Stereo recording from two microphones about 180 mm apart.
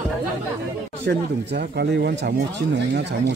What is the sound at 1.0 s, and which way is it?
Speech, 65° right (ahead or behind).